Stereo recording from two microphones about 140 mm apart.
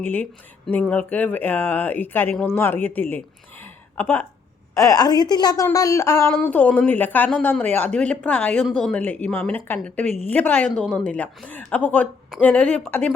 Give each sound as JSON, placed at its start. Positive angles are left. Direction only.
{"t": 0.0, "sound": "a woman's voice", "side_deg": 10}
{"t": 3.6, "sound": "a sound", "side_deg": 15}
{"t": 4.7, "sound": "a woman's voice", "side_deg": 25}